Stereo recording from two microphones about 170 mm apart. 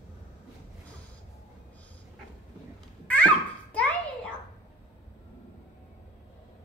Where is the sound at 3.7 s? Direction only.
10° left (ahead or behind).